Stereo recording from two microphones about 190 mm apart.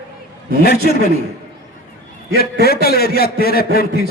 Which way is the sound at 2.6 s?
55° left (ahead or behind).